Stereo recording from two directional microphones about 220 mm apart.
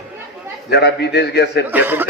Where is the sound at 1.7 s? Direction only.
10° right (ahead or behind).